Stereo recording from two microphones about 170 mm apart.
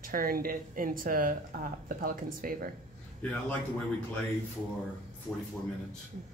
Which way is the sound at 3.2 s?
10° left (ahead or behind).